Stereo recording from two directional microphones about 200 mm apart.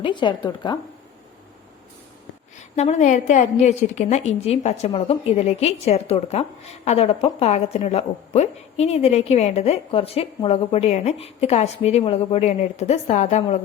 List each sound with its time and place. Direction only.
0.0 s a woman's voice: 25° left (ahead or behind)
2.7 s a woman's voice: 35° left (ahead or behind)